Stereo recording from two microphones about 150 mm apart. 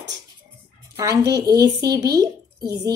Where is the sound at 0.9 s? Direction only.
25° right (ahead or behind).